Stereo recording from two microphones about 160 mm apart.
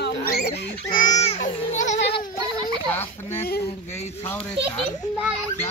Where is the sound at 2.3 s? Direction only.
25° right (ahead or behind).